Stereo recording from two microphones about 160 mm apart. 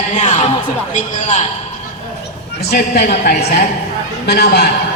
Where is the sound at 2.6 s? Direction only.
85° left.